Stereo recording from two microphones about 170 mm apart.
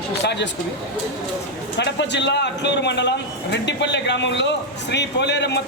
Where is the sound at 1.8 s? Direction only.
90° left.